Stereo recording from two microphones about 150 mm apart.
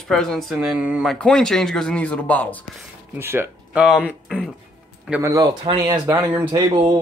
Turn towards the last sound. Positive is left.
turn(degrees=-30)  # may be behind; listen again after turning